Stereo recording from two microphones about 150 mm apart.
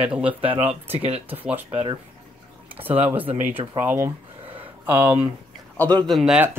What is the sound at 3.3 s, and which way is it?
Speech, 55° right (ahead or behind).